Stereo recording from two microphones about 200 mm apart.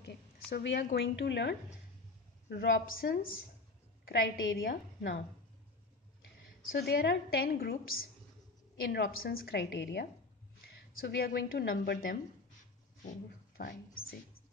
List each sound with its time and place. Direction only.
0.0 s a sound: 55° left (ahead or behind)
0.9 s a woman's voice: 60° left (ahead or behind)
4.0 s a woman's voice: 55° left (ahead or behind)
6.7 s a woman's voice: 50° left (ahead or behind)
13.6 s a woman's voice: 50° left (ahead or behind)